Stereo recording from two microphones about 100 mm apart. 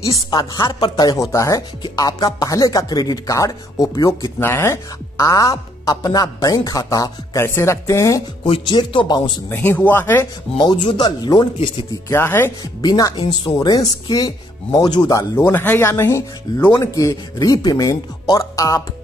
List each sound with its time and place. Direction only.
0.3 s speech: 40° left (ahead or behind)
4.4 s speech: 25° left (ahead or behind)
8.5 s a man's voice: 55° left (ahead or behind)
9.5 s speech: 20° left (ahead or behind)
11.0 s speech: 40° left (ahead or behind)
12.1 s speech: 25° left (ahead or behind)
12.8 s speech: 40° left (ahead or behind)
15.3 s speech: 20° left (ahead or behind)